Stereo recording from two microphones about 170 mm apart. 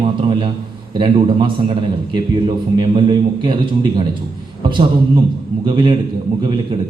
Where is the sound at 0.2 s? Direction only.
30° right (ahead or behind).